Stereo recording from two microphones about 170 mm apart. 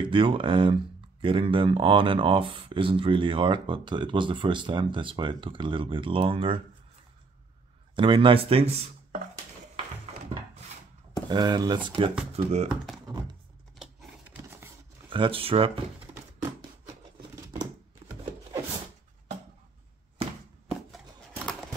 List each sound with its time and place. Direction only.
0.0 s speech: 30° right (ahead or behind)
7.9 s speech: 30° right (ahead or behind)
11.2 s speech: 25° right (ahead or behind)
12.0 s speech: 35° right (ahead or behind)
15.0 s speech: 30° right (ahead or behind)
16.2 s a sound: 20° right (ahead or behind)